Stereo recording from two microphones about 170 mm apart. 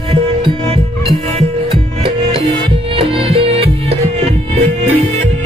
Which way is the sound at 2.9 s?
35° right (ahead or behind).